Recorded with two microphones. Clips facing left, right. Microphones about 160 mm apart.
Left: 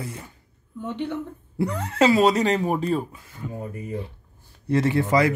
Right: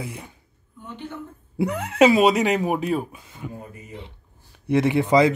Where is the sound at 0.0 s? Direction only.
15° right (ahead or behind).